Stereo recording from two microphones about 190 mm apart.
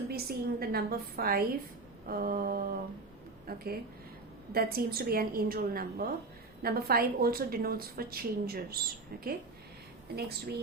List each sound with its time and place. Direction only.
0.1 s a woman's voice: 55° right (ahead or behind)
10.2 s speech: 55° right (ahead or behind)